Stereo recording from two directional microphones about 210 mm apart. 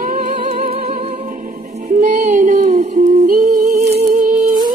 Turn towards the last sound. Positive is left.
turn(degrees=-40)  # may be behind; listen again after turning